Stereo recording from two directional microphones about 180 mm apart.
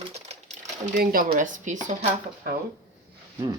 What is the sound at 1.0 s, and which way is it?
Speech, 50° right (ahead or behind).